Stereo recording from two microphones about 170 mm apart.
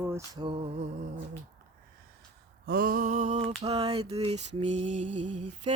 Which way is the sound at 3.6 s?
35° right (ahead or behind).